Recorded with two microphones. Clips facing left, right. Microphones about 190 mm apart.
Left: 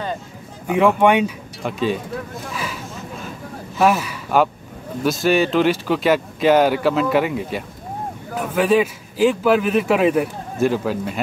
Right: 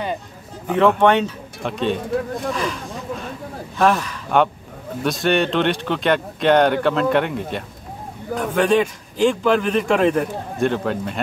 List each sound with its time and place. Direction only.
0.7 s speech: 10° left (ahead or behind)
2.5 s a sound: 5° left (ahead or behind)
3.7 s a man's voice: 5° left (ahead or behind)